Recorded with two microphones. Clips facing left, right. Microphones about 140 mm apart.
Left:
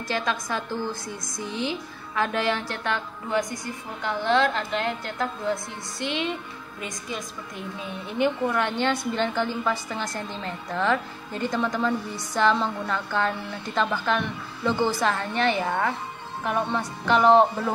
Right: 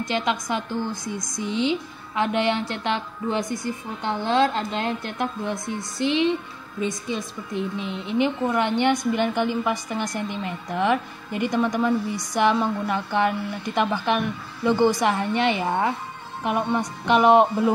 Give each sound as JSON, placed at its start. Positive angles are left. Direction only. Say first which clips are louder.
{"t": 0.0, "sound": "speech", "louder": "right 3 dB", "side_deg": -20}
{"t": 7.1, "sound": "a woman's voice", "louder": "right 5 dB", "side_deg": -25}